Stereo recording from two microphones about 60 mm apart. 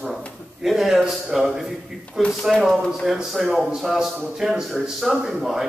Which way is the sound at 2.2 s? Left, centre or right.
Centre.